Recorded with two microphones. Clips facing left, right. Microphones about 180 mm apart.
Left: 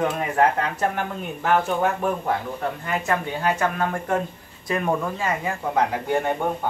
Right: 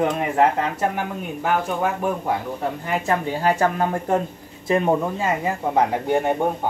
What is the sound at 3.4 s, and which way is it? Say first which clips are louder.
Speech: right 4 dB; 30° right (ahead or behind).